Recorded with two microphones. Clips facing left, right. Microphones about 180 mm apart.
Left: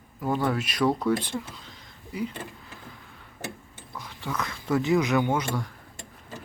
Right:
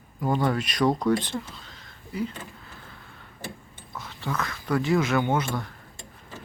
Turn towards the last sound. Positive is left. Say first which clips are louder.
# even
turn(degrees=10)  # may be behind; listen again after turning